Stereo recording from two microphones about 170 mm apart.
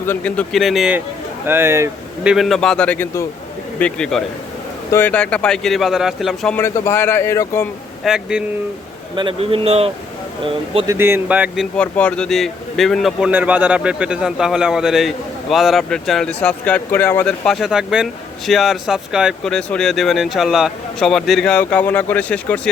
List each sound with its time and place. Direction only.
0.0 s a man's voice: 10° left (ahead or behind); by 2.3 s 15° right (ahead or behind)
2.3 s a man's voice: centre (ahead or behind)
6.6 s a man's voice: 15° left (ahead or behind)
8.0 s a man's voice: 5° right (ahead or behind)
9.1 s a man's voice: 30° right (ahead or behind)
10.8 s a man's voice: 15° right (ahead or behind); by 22.7 s 10° left (ahead or behind)